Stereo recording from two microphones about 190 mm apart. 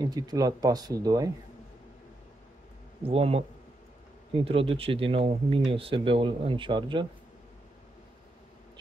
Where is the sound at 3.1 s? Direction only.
30° right (ahead or behind).